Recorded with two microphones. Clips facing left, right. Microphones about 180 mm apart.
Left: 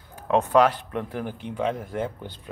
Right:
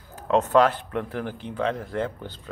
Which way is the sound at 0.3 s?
10° left (ahead or behind).